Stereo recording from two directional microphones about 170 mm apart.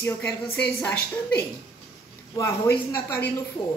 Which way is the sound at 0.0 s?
10° left (ahead or behind).